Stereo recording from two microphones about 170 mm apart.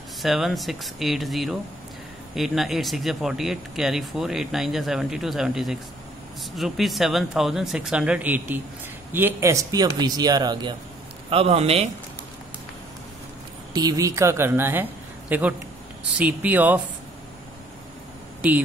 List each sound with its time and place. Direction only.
0.2 s a man's voice: centre (ahead or behind); by 11.9 s 35° right (ahead or behind)
13.7 s a woman's voice: 20° right (ahead or behind)